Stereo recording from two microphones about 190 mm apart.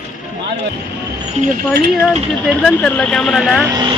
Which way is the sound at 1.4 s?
55° right (ahead or behind).